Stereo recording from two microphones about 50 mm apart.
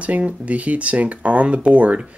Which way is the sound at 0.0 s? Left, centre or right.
Right.